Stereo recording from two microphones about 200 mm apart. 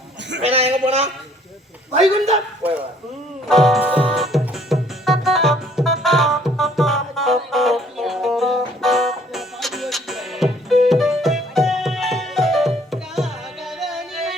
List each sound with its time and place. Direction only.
0.4 s a man's voice: 30° right (ahead or behind)
3.5 s music: centre (ahead or behind)